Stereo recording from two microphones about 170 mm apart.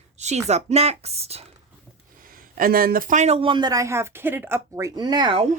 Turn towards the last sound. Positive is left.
turn(degrees=-25)  # may be behind; listen again after turning